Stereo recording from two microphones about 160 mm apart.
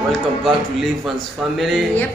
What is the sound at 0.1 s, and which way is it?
A man's voice, centre (ahead or behind).